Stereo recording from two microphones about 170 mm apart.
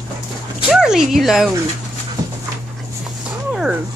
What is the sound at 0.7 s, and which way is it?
Dog, 5° right (ahead or behind).